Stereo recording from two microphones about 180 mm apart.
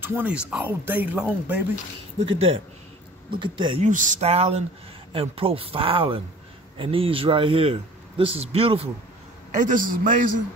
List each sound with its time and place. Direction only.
0.0 s speech: 10° right (ahead or behind)
2.2 s a man's voice: 30° right (ahead or behind)
3.8 s a man's voice: 45° right (ahead or behind)
9.6 s a man's voice: 45° right (ahead or behind)